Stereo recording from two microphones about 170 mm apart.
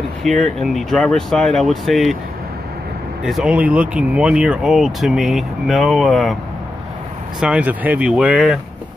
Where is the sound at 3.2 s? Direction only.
5° right (ahead or behind).